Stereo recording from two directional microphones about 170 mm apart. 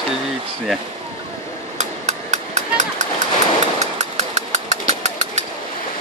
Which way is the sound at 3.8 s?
45° right (ahead or behind).